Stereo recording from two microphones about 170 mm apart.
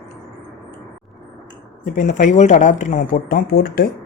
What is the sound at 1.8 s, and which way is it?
Speech, 50° left (ahead or behind).